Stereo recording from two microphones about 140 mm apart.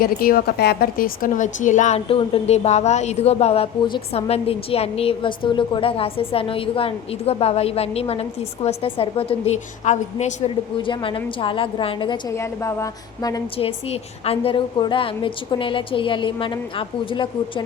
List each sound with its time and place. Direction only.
0.0 s a woman's voice: 90° left; by 2.0 s 60° left (ahead or behind)
2.0 s a woman's voice: 40° left (ahead or behind)
9.8 s a woman's voice: 55° left (ahead or behind)
10.8 s a woman's voice: 35° left (ahead or behind)
12.4 s a woman's voice: 20° left (ahead or behind)
13.6 s a woman's voice: 45° left (ahead or behind)